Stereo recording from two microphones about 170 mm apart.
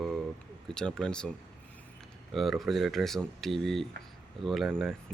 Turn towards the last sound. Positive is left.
turn(degrees=0)  # may be behind; listen again after turning